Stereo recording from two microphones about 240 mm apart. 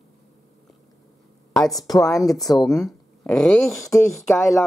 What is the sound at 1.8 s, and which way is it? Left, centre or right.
Speech, centre.